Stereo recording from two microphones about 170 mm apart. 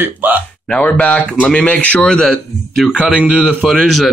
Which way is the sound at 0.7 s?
10° left (ahead or behind).